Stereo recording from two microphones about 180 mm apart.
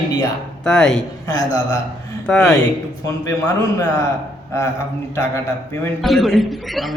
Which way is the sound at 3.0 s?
15° left (ahead or behind).